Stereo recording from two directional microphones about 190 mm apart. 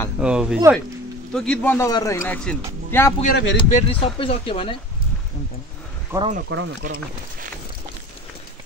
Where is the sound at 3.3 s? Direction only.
70° left (ahead or behind).